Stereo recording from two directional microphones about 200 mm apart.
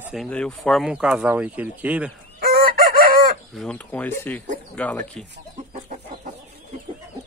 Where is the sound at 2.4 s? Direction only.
50° right (ahead or behind).